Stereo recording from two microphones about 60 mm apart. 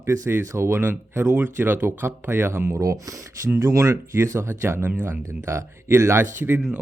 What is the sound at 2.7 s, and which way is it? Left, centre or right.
Speech, right.